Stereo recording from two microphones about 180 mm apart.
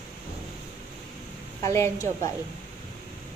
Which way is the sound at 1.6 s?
15° left (ahead or behind).